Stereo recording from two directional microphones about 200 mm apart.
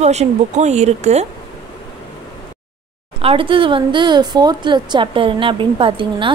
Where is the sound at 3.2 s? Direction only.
25° right (ahead or behind).